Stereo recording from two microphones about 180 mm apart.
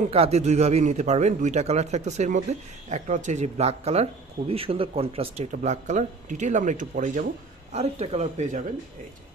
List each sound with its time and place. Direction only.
0.1 s speech: 35° right (ahead or behind)
5.5 s speech: 45° right (ahead or behind)